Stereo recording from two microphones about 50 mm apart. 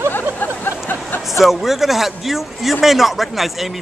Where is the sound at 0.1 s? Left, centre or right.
Left.